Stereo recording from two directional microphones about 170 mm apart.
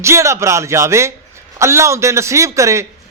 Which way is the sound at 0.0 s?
15° right (ahead or behind).